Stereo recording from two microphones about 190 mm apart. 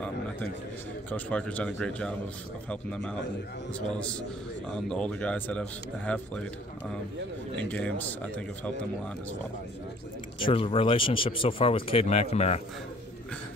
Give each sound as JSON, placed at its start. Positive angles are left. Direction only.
{"t": 1.1, "sound": "speech", "side_deg": 5}
{"t": 4.6, "sound": "speech", "side_deg": 5}
{"t": 7.5, "sound": "speech", "side_deg": 5}
{"t": 10.4, "sound": "speech", "side_deg": 30}